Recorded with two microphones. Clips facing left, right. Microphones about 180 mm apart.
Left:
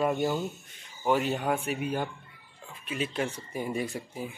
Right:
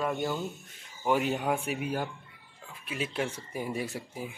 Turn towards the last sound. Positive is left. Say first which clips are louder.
# left 2 dB
turn(degrees=-5)  # may be behind; listen again after turning